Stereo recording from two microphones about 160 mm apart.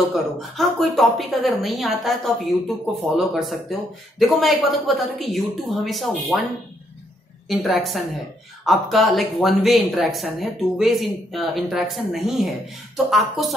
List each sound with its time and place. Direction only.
0.1 s speech: centre (ahead or behind)
7.4 s speech: centre (ahead or behind)